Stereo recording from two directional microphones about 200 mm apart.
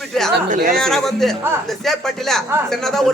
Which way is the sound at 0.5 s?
45° right (ahead or behind).